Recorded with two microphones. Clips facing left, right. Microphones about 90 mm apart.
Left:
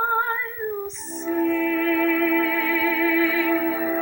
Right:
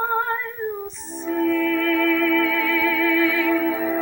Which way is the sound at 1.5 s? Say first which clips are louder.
Right 1 dB; 15° left (ahead or behind).